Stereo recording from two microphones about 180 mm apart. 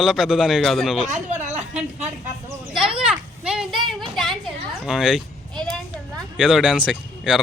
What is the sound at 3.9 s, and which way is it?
Sheep, centre (ahead or behind).